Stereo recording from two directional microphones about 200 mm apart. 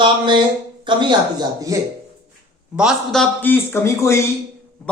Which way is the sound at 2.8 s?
Centre (ahead or behind).